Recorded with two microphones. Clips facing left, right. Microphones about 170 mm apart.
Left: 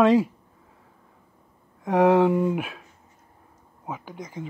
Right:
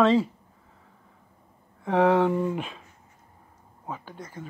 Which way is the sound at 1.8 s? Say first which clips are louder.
Left 3 dB; 10° left (ahead or behind).